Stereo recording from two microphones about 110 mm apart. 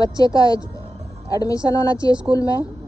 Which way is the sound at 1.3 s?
30° left (ahead or behind).